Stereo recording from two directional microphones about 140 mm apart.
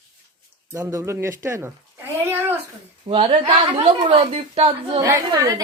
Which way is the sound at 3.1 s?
45° right (ahead or behind).